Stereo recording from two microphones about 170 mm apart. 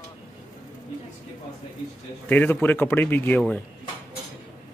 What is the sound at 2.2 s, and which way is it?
Speech, 10° left (ahead or behind).